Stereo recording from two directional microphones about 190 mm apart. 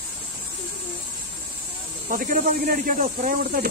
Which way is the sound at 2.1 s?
45° right (ahead or behind).